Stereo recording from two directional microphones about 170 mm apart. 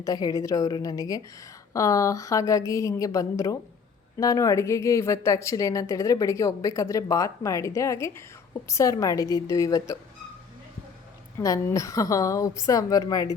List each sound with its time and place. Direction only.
0.0 s a woman's voice: 20° left (ahead or behind)
11.3 s a woman's voice: 20° left (ahead or behind)